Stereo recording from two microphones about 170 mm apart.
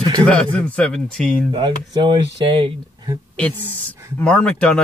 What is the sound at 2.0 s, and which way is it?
Speech, 25° right (ahead or behind).